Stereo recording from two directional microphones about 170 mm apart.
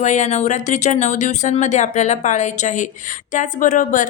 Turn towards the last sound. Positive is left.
turn(degrees=50)  # may be behind; listen again after turning